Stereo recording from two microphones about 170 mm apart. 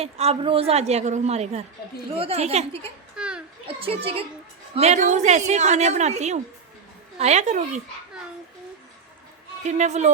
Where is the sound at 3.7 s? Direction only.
35° right (ahead or behind).